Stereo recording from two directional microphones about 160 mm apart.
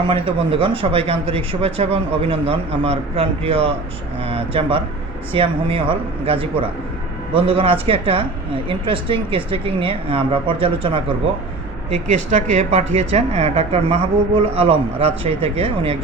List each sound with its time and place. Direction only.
0.1 s speech: 35° right (ahead or behind)
12.1 s a woman's voice: 45° right (ahead or behind)